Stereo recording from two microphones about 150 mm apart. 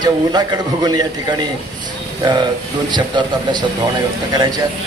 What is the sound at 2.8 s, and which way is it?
A man's voice, 30° right (ahead or behind).